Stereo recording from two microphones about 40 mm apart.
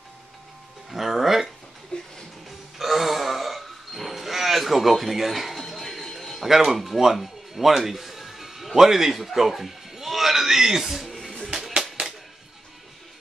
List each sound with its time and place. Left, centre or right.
0.8 s music: centre
1.9 s music: left
2.8 s a sound: centre
11.5 s music: centre